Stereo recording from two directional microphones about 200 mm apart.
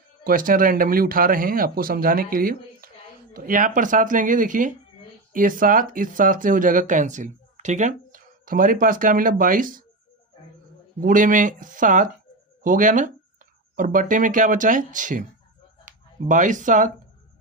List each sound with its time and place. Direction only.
0.3 s speech: 45° right (ahead or behind)
11.0 s speech: 40° right (ahead or behind)